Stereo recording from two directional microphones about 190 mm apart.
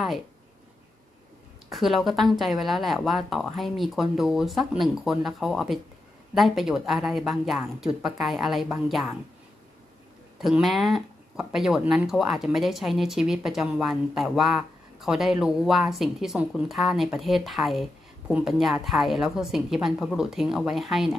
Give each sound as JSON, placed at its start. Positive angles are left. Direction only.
{"t": 1.7, "sound": "speech", "side_deg": 0}
{"t": 10.4, "sound": "speech", "side_deg": 0}